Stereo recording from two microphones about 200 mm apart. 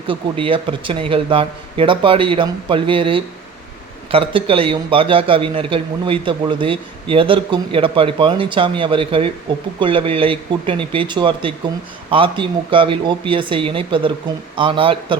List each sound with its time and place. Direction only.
0.1 s a man's voice: 25° right (ahead or behind)